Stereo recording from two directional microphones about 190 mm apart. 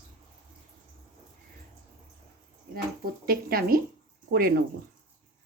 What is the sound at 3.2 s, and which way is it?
Speech, 50° right (ahead or behind).